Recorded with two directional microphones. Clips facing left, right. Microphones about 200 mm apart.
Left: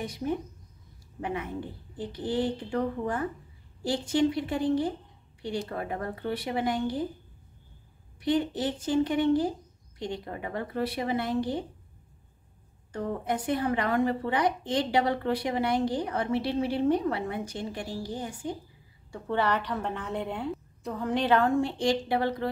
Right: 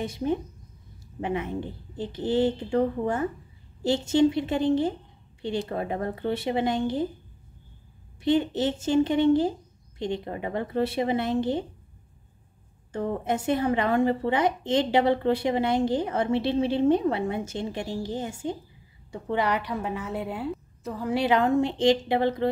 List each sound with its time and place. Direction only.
0.0 s a woman's voice: 25° right (ahead or behind)
8.2 s a woman's voice: 25° right (ahead or behind)
12.9 s a woman's voice: 25° right (ahead or behind)